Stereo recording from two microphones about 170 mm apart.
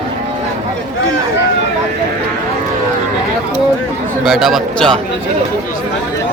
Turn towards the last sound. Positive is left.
turn(degrees=5)  # may be behind; listen again after turning